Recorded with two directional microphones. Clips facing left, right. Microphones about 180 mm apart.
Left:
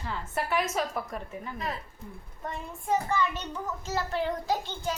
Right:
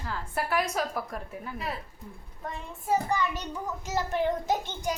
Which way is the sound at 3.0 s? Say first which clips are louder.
Even; 15° right (ahead or behind).